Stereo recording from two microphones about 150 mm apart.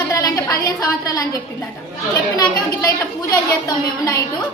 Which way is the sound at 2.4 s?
20° left (ahead or behind).